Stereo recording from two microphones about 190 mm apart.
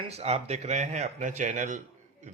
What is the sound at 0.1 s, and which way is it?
A man's voice, 35° right (ahead or behind).